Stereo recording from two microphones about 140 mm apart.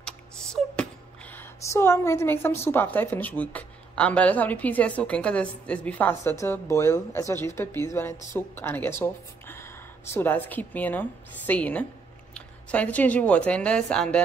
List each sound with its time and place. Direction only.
0.0 s a woman's voice: 5° left (ahead or behind)